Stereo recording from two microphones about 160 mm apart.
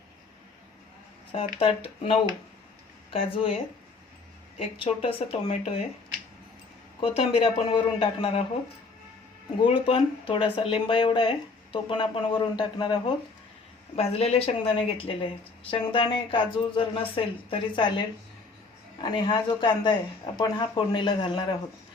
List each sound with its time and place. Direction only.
1.5 s speech: 35° left (ahead or behind)
4.6 s speech: 35° left (ahead or behind)
7.0 s speech: 40° left (ahead or behind)
9.6 s speech: 30° left (ahead or behind)
13.9 s speech: 40° left (ahead or behind)
19.0 s speech: 30° left (ahead or behind)